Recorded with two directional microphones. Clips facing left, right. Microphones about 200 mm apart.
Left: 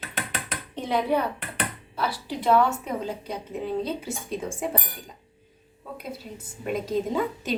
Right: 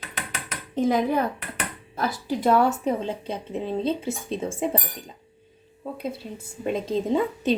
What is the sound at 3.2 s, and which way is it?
Speech, 25° right (ahead or behind).